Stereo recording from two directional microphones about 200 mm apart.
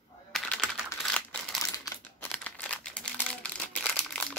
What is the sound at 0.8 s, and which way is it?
Computer keyboard, 5° left (ahead or behind).